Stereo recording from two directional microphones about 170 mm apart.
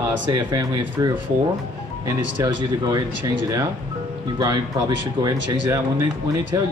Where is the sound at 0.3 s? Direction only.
20° right (ahead or behind).